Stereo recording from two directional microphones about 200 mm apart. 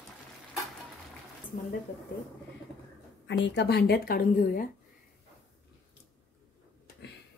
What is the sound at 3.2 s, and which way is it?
Speech, 60° left (ahead or behind).